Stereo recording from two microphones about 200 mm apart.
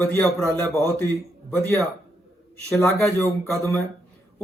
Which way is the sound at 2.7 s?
10° left (ahead or behind).